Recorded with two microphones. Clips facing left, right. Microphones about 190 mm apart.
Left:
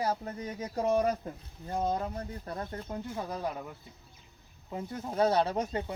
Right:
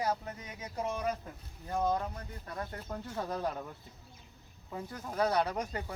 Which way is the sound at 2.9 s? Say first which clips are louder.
Right 1 dB; 10° left (ahead or behind).